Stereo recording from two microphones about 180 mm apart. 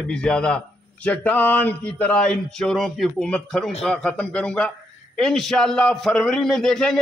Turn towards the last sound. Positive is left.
turn(degrees=5)  # may be behind; listen again after turning